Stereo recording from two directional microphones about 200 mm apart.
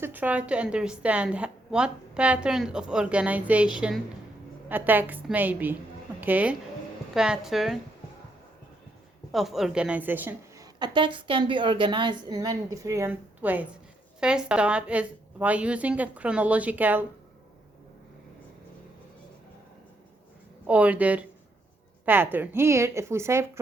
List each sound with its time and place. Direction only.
0.0 s a woman's voice: 10° right (ahead or behind)
9.3 s a woman's voice: centre (ahead or behind)
10.8 s a woman's voice: 20° right (ahead or behind)
20.7 s a woman's voice: 5° right (ahead or behind)